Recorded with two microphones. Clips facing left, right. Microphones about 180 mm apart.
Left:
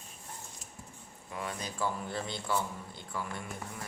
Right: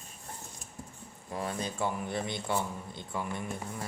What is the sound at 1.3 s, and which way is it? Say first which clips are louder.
A man's voice: right 4 dB; 35° right (ahead or behind).